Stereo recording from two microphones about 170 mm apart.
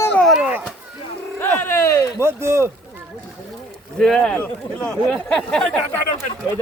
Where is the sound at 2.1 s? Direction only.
15° right (ahead or behind).